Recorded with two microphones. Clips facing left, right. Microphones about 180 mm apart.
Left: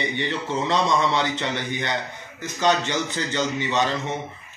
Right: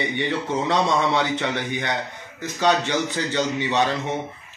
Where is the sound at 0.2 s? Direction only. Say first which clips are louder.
Right 3 dB; 15° right (ahead or behind).